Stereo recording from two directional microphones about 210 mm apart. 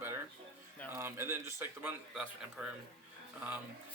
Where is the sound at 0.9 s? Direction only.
10° right (ahead or behind).